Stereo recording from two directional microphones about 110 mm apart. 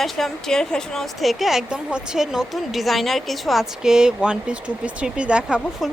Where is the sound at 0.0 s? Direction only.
5° left (ahead or behind).